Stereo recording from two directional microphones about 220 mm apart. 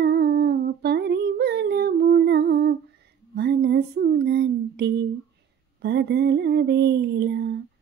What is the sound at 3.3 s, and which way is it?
Female singing, 45° right (ahead or behind).